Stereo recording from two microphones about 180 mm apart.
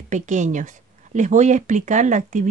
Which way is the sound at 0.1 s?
40° right (ahead or behind).